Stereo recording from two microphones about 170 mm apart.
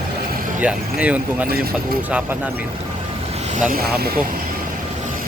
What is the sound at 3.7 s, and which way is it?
Speech, 65° right (ahead or behind).